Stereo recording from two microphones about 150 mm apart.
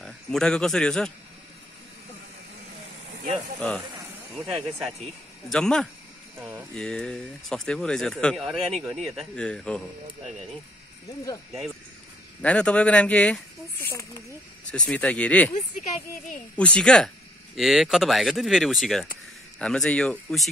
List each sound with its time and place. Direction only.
0.0 s speech: 5° left (ahead or behind)
4.5 s speech: 5° right (ahead or behind)
12.4 s speech: 5° left (ahead or behind)
13.7 s speech: 20° left (ahead or behind)
14.9 s speech: 5° left (ahead or behind)
15.5 s speech: 50° left (ahead or behind)
16.5 s speech: 5° left (ahead or behind)